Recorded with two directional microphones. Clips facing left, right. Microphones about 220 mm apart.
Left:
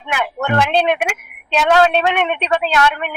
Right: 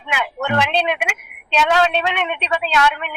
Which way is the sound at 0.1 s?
50° left (ahead or behind).